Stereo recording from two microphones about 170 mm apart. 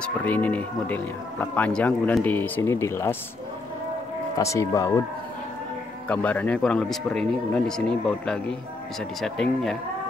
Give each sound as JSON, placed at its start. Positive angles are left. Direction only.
{"t": 0.0, "sound": "speech", "side_deg": 10}
{"t": 4.4, "sound": "speech", "side_deg": 15}
{"t": 6.0, "sound": "speech", "side_deg": 10}